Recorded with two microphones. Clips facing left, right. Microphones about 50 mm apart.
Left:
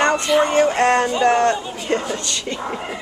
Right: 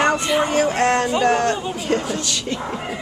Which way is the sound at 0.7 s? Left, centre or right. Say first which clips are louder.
Left 1 dB; centre.